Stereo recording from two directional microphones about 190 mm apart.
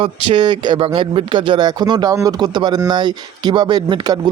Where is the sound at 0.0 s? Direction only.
25° right (ahead or behind).